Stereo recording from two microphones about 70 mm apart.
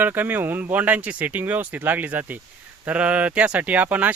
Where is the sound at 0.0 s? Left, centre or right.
Right.